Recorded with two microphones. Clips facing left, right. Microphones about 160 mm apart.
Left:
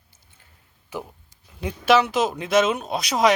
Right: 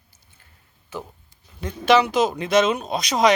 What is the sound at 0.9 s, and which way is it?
Speech, 10° left (ahead or behind).